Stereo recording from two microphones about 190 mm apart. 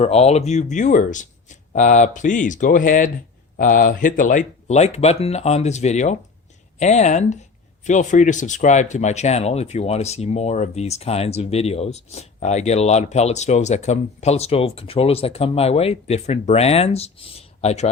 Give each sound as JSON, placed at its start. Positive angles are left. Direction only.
{"t": 0.0, "sound": "speech", "side_deg": 35}